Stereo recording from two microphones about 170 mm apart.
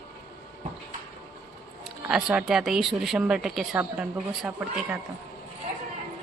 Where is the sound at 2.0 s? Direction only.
5° right (ahead or behind).